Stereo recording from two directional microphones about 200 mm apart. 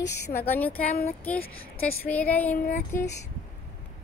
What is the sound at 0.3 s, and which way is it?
Speech, 10° left (ahead or behind).